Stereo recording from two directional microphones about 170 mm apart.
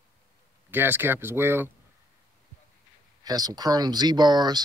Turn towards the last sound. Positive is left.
turn(degrees=-25)  # may be behind; listen again after turning